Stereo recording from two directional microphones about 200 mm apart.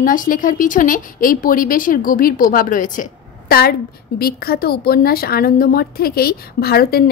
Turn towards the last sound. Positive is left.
turn(degrees=50)  # may be behind; listen again after turning